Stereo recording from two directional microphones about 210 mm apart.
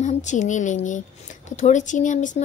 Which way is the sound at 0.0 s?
35° left (ahead or behind).